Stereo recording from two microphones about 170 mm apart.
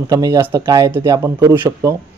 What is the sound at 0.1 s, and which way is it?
Speech, 20° right (ahead or behind).